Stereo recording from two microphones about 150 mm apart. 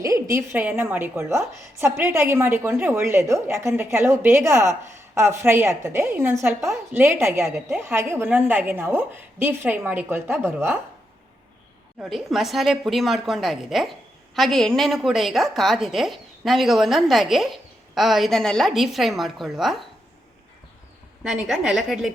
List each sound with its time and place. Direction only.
0.0 s a woman's voice: 20° right (ahead or behind)
11.9 s a woman's voice: centre (ahead or behind)
21.2 s a woman's voice: 5° right (ahead or behind)